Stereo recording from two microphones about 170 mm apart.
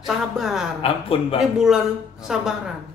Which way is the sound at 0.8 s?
35° left (ahead or behind).